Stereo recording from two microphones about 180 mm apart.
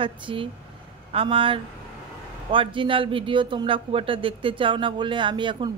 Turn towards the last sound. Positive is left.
turn(degrees=-25)  # may be behind; listen again after turning